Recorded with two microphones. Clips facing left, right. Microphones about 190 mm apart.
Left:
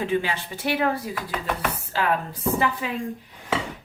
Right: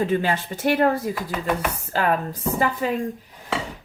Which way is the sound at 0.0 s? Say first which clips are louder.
Right 3 dB; 45° right (ahead or behind).